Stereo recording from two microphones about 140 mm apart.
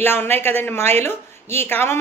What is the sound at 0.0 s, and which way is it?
Speech, 15° left (ahead or behind).